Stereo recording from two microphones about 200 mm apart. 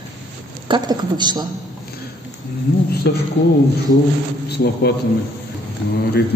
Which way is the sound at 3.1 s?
55° left (ahead or behind).